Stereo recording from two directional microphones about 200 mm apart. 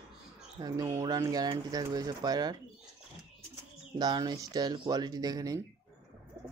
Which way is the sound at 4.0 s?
20° right (ahead or behind).